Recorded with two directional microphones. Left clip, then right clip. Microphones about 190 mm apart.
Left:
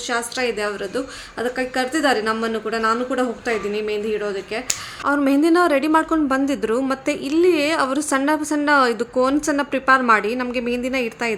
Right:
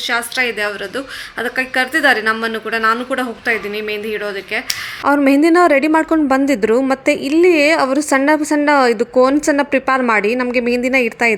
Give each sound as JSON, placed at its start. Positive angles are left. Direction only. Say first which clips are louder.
{"t": 0.1, "sound": "a woman's voice", "louder": "right 4 dB", "side_deg": 0}
{"t": 5.0, "sound": "a woman's voice", "louder": "right 5 dB", "side_deg": -25}